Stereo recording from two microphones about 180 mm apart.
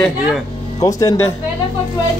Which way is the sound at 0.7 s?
20° left (ahead or behind).